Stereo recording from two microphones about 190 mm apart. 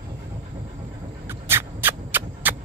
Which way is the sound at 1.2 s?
10° right (ahead or behind).